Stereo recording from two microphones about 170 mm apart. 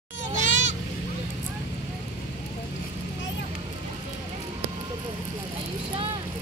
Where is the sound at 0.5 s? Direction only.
90° left.